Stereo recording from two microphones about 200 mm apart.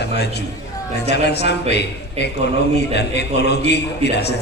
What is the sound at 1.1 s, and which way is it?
A man's voice, 55° left (ahead or behind).